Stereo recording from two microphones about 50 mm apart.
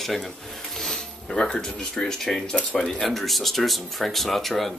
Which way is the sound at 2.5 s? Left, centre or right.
Centre.